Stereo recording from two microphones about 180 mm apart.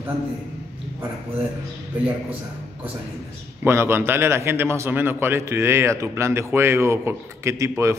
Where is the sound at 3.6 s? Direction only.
15° right (ahead or behind).